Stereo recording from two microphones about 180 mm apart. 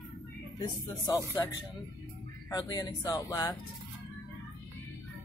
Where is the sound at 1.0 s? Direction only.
20° left (ahead or behind).